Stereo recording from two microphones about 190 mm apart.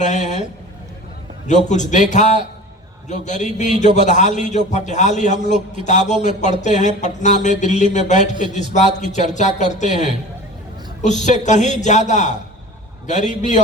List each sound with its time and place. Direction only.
0.0 s a man's voice: 40° left (ahead or behind)
1.6 s a man's voice: 40° left (ahead or behind)